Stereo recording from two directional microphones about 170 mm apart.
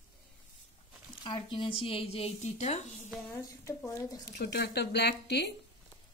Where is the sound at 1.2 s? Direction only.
30° left (ahead or behind).